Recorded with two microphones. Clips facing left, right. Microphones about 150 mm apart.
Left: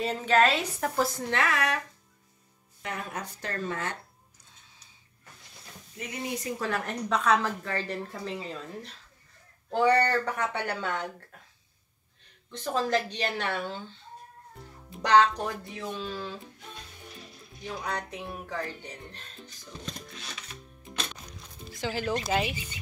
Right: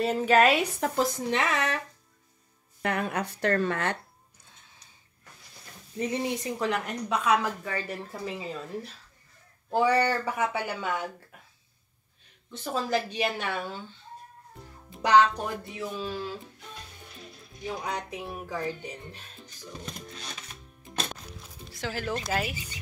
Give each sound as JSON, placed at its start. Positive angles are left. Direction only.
{"t": 0.0, "sound": "speech", "side_deg": -5}
{"t": 2.8, "sound": "speech", "side_deg": -70}
{"t": 5.9, "sound": "speech", "side_deg": -30}
{"t": 9.7, "sound": "speech", "side_deg": -5}
{"t": 12.4, "sound": "speech", "side_deg": -5}
{"t": 14.9, "sound": "speech", "side_deg": -10}
{"t": 17.6, "sound": "speech", "side_deg": -10}
{"t": 21.2, "sound": "music", "side_deg": 0}